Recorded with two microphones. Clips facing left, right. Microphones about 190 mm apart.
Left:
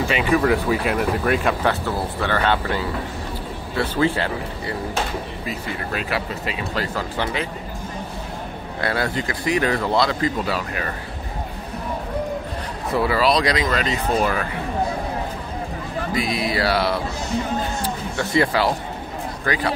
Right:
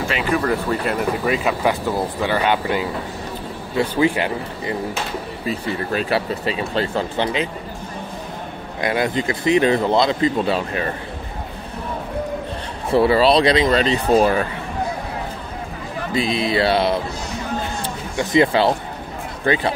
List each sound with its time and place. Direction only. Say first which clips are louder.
0.1 s speech: left 2 dB; centre (ahead or behind); by 4.7 s 15° right (ahead or behind)
5.5 s speech: right 6 dB; 30° right (ahead or behind)
8.8 s speech: right 4 dB; 20° right (ahead or behind)
12.9 s speech: right 5 dB; 25° right (ahead or behind)
16.1 s speech: right 4 dB; 25° right (ahead or behind)
18.1 s speech: right 4 dB; 20° right (ahead or behind)